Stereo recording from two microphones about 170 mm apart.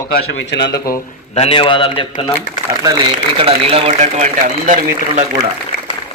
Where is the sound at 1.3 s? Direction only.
35° left (ahead or behind).